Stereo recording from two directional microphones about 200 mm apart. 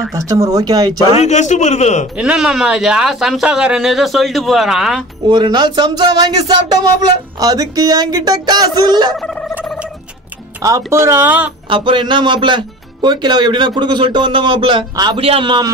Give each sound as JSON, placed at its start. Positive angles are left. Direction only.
{"t": 0.1, "sound": "speech", "side_deg": -15}
{"t": 1.1, "sound": "a man's voice", "side_deg": 35}
{"t": 2.1, "sound": "speech", "side_deg": -5}
{"t": 5.3, "sound": "a man's voice", "side_deg": -20}
{"t": 9.2, "sound": "a sound", "side_deg": 5}
{"t": 9.6, "sound": "a sound", "side_deg": -5}
{"t": 10.6, "sound": "speech", "side_deg": -15}
{"t": 11.7, "sound": "a man's voice", "side_deg": -25}